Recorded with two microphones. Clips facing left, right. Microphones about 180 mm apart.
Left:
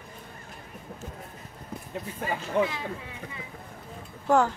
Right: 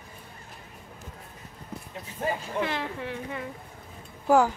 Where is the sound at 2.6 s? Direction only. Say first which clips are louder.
Left 2 dB; 65° right (ahead or behind).